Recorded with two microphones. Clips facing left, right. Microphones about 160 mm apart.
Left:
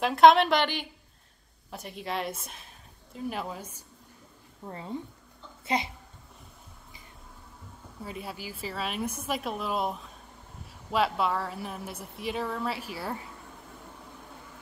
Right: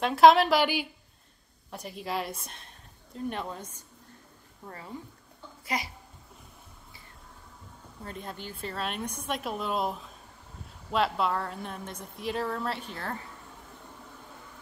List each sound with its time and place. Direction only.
0.0 s a woman's voice: centre (ahead or behind)
4.6 s speech: 25° left (ahead or behind)
8.0 s a woman's voice: 5° left (ahead or behind)